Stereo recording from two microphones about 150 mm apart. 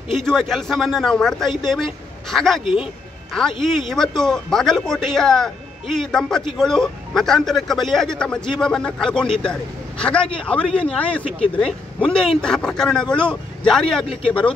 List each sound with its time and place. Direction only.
0.1 s speech: centre (ahead or behind)